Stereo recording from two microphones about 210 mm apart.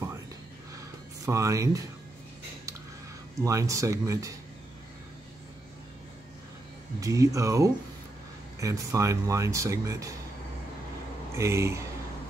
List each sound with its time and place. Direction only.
1.2 s speech: 15° right (ahead or behind)
3.4 s speech: 15° right (ahead or behind)
7.0 s speech: 15° right (ahead or behind)
11.3 s speech: 15° right (ahead or behind)